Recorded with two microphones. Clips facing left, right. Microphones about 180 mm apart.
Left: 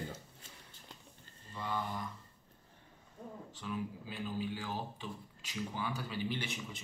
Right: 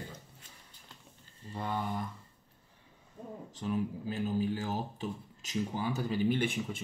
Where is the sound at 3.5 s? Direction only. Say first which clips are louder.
Right 7 dB; 40° right (ahead or behind).